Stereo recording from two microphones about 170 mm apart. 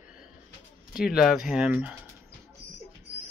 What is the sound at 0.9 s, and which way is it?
Speech, 5° right (ahead or behind).